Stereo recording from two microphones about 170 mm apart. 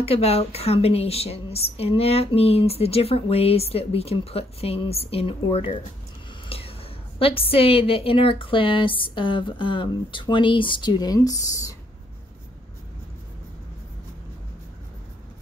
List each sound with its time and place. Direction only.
0.0 s a woman's voice: 35° left (ahead or behind); by 11.7 s 20° left (ahead or behind)